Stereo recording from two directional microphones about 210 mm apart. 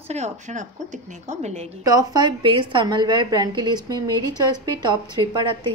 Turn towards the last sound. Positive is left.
turn(degrees=-20)  # may be behind; listen again after turning